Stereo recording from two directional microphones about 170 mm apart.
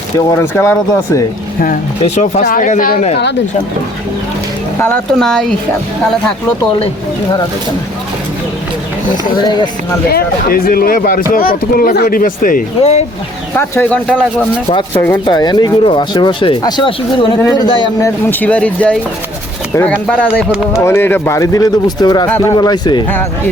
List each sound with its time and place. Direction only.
0.2 s speech: 15° left (ahead or behind)
1.6 s speech: 45° left (ahead or behind)
4.8 s speech: 5° left (ahead or behind)
9.4 s speech: 25° left (ahead or behind)
10.1 s speech: 60° left (ahead or behind); by 13.1 s 40° left (ahead or behind)
13.6 s speech: 10° left (ahead or behind)
14.7 s speech: 30° left (ahead or behind)
18.3 s speech: 10° left (ahead or behind); by 23.0 s 25° left (ahead or behind)